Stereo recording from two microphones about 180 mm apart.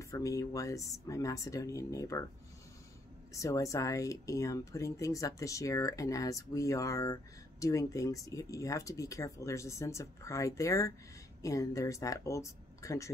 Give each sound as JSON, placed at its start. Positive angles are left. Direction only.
{"t": 0.1, "sound": "speech", "side_deg": 20}
{"t": 3.3, "sound": "speech", "side_deg": 15}